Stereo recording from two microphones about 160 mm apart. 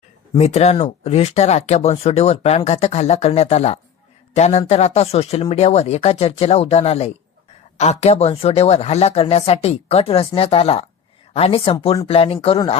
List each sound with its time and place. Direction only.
0.3 s speech: 45° left (ahead or behind)